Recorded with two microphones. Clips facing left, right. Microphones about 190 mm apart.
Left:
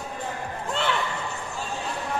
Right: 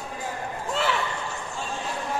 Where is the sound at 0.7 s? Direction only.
5° right (ahead or behind).